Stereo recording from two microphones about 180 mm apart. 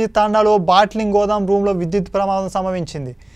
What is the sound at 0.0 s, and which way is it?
A man's voice, centre (ahead or behind).